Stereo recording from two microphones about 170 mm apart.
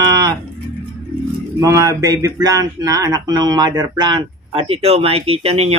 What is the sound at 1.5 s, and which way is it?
Speech, 20° right (ahead or behind).